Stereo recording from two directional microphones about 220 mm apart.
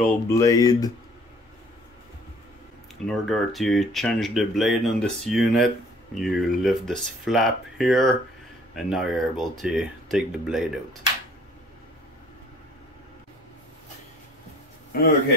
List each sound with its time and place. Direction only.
0.0 s speech: 10° left (ahead or behind)
3.1 s speech: centre (ahead or behind)
14.9 s speech: 45° left (ahead or behind)